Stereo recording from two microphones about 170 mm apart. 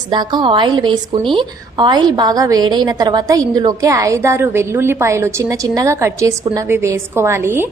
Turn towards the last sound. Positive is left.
turn(degrees=-15)  # may be behind; listen again after turning